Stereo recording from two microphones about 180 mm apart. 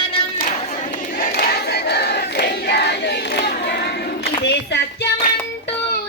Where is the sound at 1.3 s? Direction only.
60° left (ahead or behind).